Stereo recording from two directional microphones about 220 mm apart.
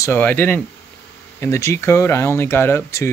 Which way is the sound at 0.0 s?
10° left (ahead or behind).